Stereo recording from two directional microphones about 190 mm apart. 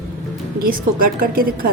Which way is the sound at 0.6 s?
50° right (ahead or behind).